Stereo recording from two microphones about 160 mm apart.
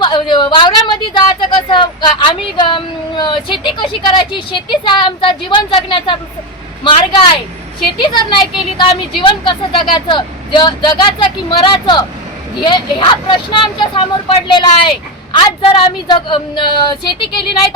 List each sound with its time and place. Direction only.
0.0 s a woman's voice: 30° left (ahead or behind)